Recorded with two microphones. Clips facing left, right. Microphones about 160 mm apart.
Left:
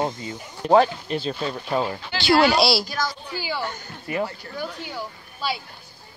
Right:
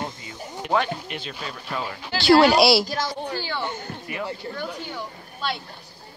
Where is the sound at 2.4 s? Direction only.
5° right (ahead or behind).